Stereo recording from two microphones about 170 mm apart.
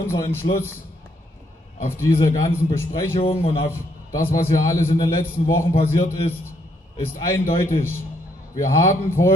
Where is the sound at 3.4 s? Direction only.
30° left (ahead or behind).